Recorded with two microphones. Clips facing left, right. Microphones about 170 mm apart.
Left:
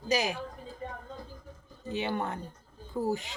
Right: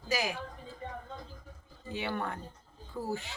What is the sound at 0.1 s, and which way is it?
Speech, 20° left (ahead or behind).